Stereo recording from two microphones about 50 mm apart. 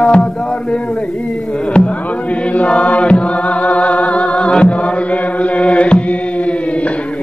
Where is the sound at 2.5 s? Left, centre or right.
Left.